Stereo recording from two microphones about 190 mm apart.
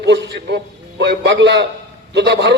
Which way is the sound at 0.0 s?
65° right (ahead or behind).